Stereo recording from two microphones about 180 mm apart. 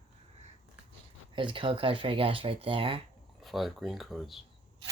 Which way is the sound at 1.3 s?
30° right (ahead or behind).